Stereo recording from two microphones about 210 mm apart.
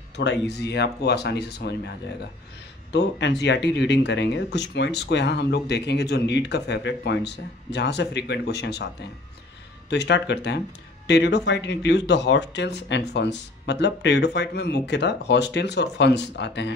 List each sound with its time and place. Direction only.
0.2 s speech: 55° left (ahead or behind)
2.9 s speech: 55° left (ahead or behind)
9.8 s speech: 55° left (ahead or behind)